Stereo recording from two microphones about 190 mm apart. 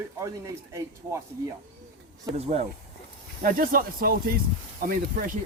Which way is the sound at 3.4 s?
50° right (ahead or behind).